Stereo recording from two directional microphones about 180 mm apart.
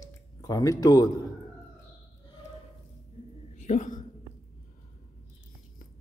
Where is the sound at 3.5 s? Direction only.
45° left (ahead or behind).